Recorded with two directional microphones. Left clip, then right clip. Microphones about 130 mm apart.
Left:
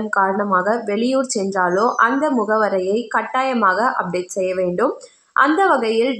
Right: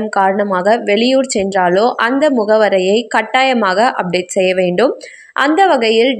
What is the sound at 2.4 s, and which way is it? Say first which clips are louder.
Speech: right 8 dB; 30° right (ahead or behind).